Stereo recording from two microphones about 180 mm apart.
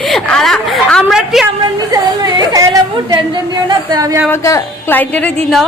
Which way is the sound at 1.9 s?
20° right (ahead or behind).